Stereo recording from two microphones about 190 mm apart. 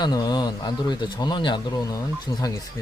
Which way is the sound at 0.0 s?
20° left (ahead or behind).